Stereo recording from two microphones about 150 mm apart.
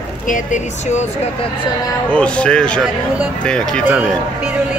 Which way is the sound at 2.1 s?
5° left (ahead or behind).